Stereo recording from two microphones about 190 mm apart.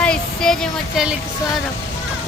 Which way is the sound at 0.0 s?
5° left (ahead or behind).